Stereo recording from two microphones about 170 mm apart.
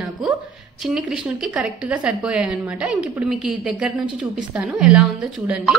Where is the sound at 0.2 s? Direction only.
Centre (ahead or behind).